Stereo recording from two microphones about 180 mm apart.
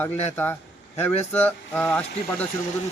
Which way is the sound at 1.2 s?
10° left (ahead or behind).